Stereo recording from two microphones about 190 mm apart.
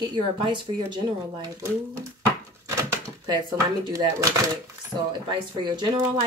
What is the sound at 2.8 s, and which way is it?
Speech, 20° right (ahead or behind).